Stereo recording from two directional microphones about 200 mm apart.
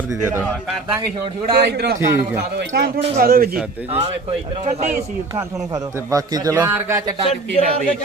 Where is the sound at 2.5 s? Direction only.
50° right (ahead or behind).